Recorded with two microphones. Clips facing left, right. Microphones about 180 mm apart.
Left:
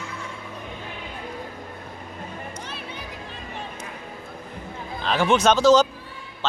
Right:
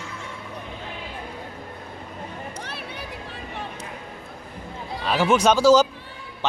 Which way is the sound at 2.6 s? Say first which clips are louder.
Right 1 dB; 70° right (ahead or behind).